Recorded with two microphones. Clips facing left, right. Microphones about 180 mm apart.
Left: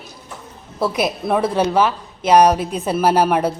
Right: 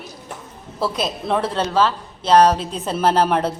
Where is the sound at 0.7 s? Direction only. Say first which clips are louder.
Left 3 dB; 15° left (ahead or behind).